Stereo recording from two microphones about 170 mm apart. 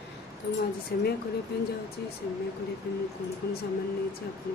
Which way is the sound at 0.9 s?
60° left (ahead or behind).